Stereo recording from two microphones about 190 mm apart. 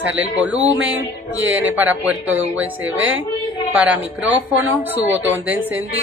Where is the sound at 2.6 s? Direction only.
90° right.